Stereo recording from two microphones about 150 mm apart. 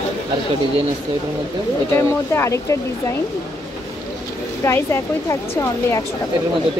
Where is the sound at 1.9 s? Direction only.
15° left (ahead or behind).